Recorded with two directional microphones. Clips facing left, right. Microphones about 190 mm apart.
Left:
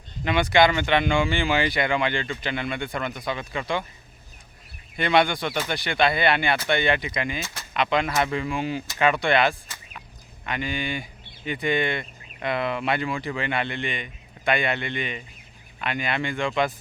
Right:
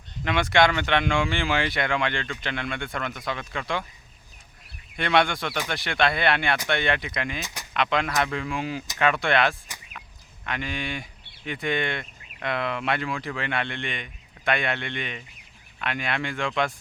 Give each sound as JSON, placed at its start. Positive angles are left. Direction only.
{"t": 0.3, "sound": "speech", "side_deg": 0}
{"t": 4.9, "sound": "speech", "side_deg": 0}
{"t": 7.4, "sound": "a sound", "side_deg": -15}
{"t": 7.7, "sound": "speech", "side_deg": 0}